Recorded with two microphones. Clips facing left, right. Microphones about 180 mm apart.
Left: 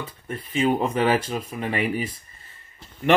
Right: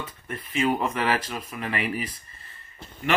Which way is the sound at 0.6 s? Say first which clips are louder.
Left 3 dB; 30° left (ahead or behind).